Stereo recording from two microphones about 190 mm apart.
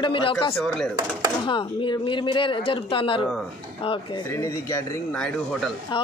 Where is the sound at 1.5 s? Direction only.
25° left (ahead or behind).